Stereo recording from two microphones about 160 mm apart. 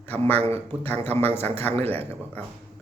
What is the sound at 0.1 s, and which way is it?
A man's voice, 10° left (ahead or behind).